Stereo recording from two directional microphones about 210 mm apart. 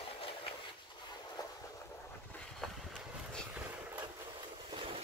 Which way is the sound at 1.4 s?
20° left (ahead or behind).